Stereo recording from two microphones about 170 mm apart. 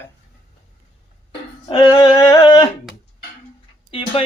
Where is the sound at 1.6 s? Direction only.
25° left (ahead or behind).